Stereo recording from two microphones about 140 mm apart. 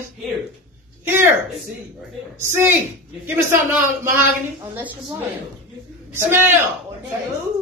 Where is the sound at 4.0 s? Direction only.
20° right (ahead or behind).